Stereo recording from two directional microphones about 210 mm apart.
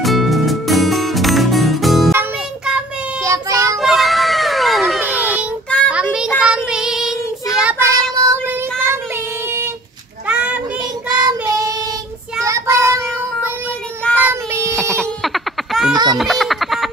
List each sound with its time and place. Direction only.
0.0 s music: centre (ahead or behind)
2.1 s child singing: 5° right (ahead or behind)
3.7 s a sound: centre (ahead or behind)
5.7 s child singing: 5° left (ahead or behind)
10.8 s child singing: 20° right (ahead or behind)
14.8 s a sound: 5° left (ahead or behind)
15.9 s baby laughter: 20° right (ahead or behind)
16.2 s baby laughter: centre (ahead or behind)